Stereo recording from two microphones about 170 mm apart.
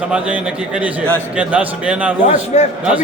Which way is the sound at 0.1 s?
5° right (ahead or behind).